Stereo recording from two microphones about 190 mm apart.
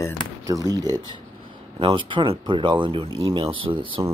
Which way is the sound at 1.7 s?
25° right (ahead or behind).